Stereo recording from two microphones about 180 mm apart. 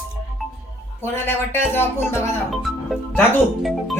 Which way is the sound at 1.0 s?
10° left (ahead or behind).